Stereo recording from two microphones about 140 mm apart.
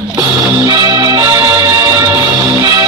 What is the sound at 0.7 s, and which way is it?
Music, 25° right (ahead or behind).